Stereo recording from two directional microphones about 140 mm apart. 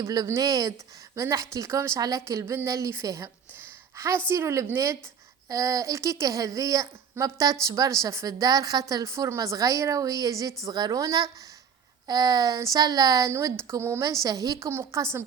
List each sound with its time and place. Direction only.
0.0 s a woman's voice: 25° right (ahead or behind)